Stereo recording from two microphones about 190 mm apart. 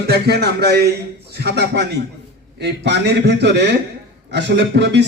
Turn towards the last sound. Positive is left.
turn(degrees=-65)  # may be behind; listen again after turning